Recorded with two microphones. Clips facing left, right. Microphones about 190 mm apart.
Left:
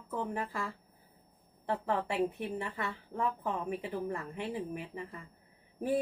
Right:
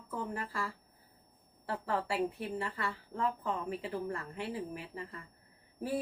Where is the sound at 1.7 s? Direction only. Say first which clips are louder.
Left 2 dB; 20° left (ahead or behind).